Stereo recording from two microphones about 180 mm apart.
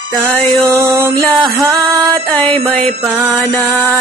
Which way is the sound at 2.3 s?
10° left (ahead or behind).